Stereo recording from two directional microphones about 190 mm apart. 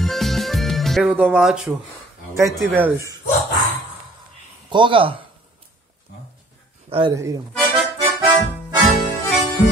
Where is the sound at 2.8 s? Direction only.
15° right (ahead or behind).